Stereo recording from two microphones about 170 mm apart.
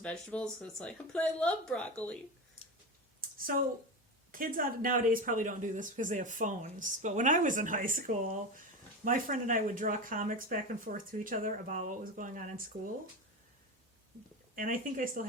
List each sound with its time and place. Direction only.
0.0 s speech: 5° left (ahead or behind)
3.2 s a sound: 55° right (ahead or behind)
4.3 s speech: 55° right (ahead or behind)
14.5 s speech: 55° right (ahead or behind)